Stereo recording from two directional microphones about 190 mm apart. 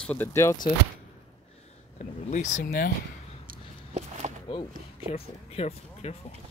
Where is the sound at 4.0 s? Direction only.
35° right (ahead or behind).